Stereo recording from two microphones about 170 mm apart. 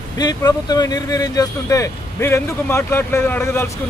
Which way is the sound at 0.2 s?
20° left (ahead or behind).